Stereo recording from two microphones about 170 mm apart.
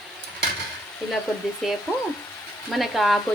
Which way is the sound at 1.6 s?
Centre (ahead or behind).